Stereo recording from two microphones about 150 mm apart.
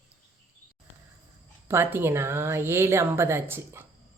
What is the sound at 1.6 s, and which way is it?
A woman's voice, 15° right (ahead or behind).